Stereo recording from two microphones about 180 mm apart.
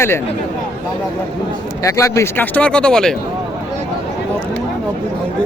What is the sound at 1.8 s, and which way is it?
Speech, 15° left (ahead or behind).